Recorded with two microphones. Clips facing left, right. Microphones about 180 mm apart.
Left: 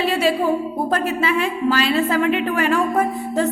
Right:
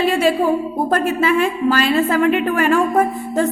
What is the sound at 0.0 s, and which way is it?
A woman's voice, 50° right (ahead or behind).